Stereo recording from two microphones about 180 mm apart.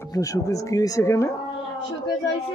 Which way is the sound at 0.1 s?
20° left (ahead or behind).